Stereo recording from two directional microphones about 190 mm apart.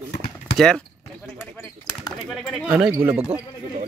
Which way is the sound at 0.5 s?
5° left (ahead or behind).